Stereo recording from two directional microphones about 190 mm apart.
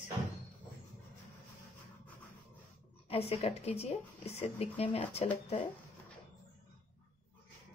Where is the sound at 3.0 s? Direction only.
30° left (ahead or behind).